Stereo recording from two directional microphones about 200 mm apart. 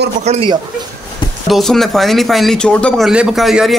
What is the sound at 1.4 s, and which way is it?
Speech, centre (ahead or behind).